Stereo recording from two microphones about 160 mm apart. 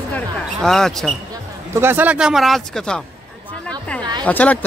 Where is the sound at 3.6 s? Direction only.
5° left (ahead or behind).